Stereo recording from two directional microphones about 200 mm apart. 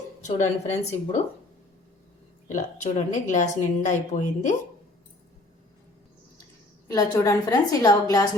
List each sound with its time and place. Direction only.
0.2 s a woman's voice: 35° left (ahead or behind)
2.5 s a woman's voice: 40° left (ahead or behind)
6.8 s a woman's voice: 15° left (ahead or behind)